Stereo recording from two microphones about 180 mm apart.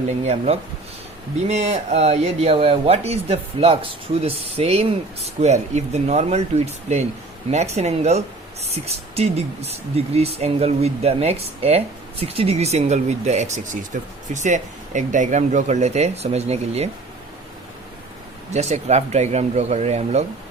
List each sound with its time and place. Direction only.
0.3 s speech: 35° right (ahead or behind)
18.5 s speech: 40° right (ahead or behind)